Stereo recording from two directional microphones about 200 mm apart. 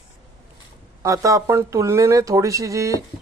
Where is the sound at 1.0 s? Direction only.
15° right (ahead or behind).